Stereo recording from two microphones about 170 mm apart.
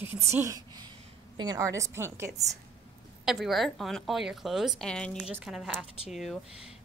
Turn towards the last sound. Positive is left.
turn(degrees=0)  # may be behind; listen again after turning